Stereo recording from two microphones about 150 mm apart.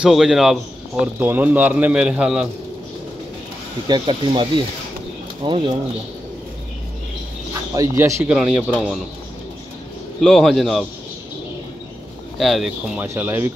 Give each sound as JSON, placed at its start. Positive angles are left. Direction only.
{"t": 0.0, "sound": "speech", "side_deg": -5}
{"t": 3.8, "sound": "speech", "side_deg": -30}
{"t": 7.7, "sound": "speech", "side_deg": -20}
{"t": 8.3, "sound": "speech", "side_deg": -5}
{"t": 10.2, "sound": "speech", "side_deg": 0}
{"t": 12.4, "sound": "speech", "side_deg": 0}
{"t": 13.0, "sound": "speech", "side_deg": -15}